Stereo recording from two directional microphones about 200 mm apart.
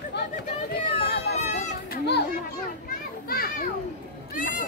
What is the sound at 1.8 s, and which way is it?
Children playing, 55° left (ahead or behind).